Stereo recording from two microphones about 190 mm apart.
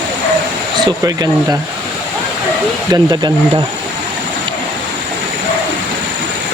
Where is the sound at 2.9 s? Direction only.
20° right (ahead or behind).